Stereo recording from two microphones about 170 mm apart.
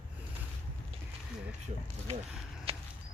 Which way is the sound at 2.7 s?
35° right (ahead or behind).